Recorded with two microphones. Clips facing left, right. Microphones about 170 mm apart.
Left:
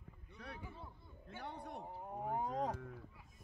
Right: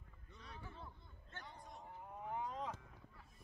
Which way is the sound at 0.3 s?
65° left (ahead or behind).